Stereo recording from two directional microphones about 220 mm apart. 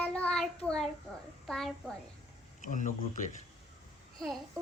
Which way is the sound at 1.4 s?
5° left (ahead or behind).